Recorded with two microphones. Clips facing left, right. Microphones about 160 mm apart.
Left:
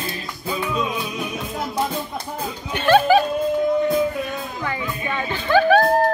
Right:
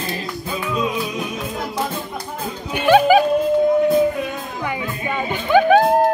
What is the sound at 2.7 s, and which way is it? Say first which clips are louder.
Music: right 2 dB; 10° right (ahead or behind).